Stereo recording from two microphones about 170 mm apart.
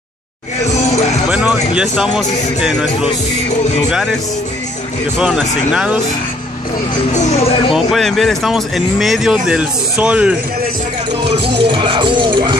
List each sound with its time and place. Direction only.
1.3 s speech: 5° right (ahead or behind)
5.2 s speech: 5° right (ahead or behind)
7.1 s speech: 45° left (ahead or behind)
7.7 s speech: centre (ahead or behind)
11.2 s music: 35° right (ahead or behind)